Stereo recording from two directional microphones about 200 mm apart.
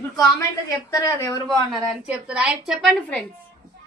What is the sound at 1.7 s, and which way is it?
A woman's voice, 5° right (ahead or behind).